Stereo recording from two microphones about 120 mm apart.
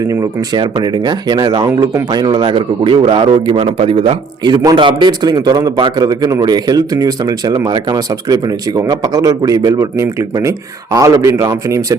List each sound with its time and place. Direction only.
0.1 s a man's voice: 30° right (ahead or behind)